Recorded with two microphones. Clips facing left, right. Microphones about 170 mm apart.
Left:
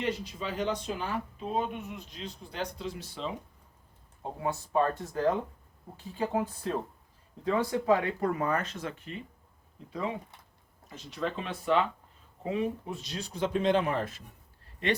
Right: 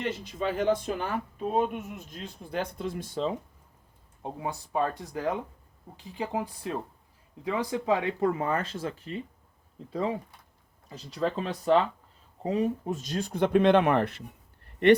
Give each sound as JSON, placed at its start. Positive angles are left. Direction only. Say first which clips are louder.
{"t": 0.0, "sound": "speech", "louder": "right 2 dB", "side_deg": -50}
{"t": 4.2, "sound": "speech", "louder": "left 1 dB", "side_deg": -15}
{"t": 10.9, "sound": "speech", "louder": "right 4 dB", "side_deg": -35}